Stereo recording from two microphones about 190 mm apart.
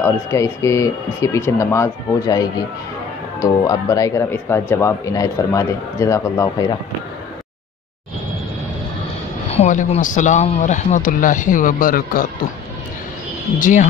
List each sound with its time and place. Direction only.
0.0 s speech: 15° left (ahead or behind)
9.5 s speech: 40° left (ahead or behind)
13.6 s speech: 45° left (ahead or behind)